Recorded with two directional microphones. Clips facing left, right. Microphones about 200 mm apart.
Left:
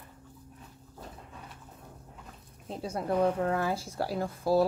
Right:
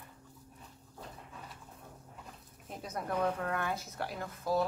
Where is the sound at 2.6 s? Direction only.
30° left (ahead or behind).